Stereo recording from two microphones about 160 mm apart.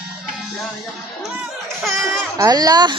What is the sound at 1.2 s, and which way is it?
Music, centre (ahead or behind).